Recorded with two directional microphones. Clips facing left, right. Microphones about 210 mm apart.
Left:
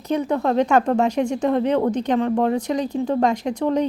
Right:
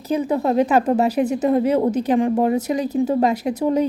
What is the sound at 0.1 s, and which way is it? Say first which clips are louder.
A woman's voice: right 1 dB; 5° right (ahead or behind).